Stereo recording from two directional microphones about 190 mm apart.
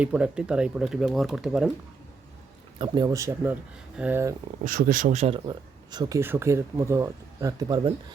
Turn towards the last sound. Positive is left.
turn(degrees=-15)  # may be behind; listen again after turning